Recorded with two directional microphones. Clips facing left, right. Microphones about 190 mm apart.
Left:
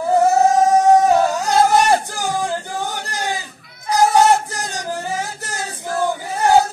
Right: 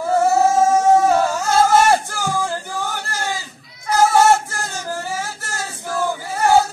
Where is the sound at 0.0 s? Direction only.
20° left (ahead or behind).